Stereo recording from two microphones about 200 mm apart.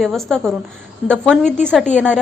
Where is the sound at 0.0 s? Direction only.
Centre (ahead or behind).